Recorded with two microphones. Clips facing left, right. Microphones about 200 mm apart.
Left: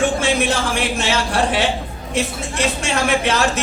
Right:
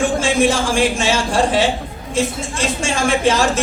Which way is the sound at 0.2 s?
60° left (ahead or behind).